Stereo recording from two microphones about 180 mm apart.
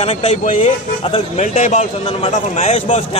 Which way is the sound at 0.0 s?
35° left (ahead or behind).